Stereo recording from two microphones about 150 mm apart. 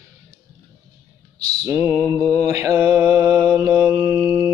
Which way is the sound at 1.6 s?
20° right (ahead or behind).